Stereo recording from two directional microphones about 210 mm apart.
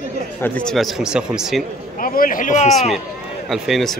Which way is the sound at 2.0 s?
40° left (ahead or behind).